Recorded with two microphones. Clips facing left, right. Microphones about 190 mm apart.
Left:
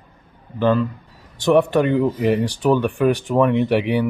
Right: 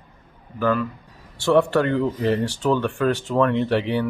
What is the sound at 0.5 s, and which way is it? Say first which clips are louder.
Speech: left 4 dB; 25° left (ahead or behind).